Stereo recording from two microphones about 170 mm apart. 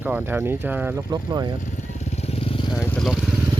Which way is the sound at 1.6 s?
40° left (ahead or behind).